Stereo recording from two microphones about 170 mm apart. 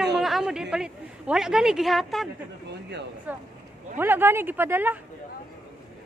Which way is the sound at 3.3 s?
10° right (ahead or behind).